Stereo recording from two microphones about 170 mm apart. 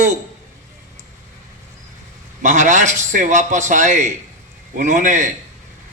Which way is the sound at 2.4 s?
45° right (ahead or behind).